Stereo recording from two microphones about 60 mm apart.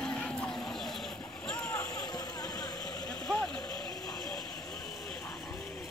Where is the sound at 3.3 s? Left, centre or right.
Centre.